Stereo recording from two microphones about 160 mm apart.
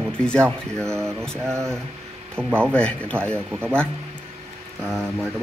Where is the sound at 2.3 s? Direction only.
5° left (ahead or behind).